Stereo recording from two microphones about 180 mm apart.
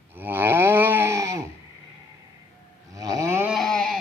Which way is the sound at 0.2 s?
10° right (ahead or behind).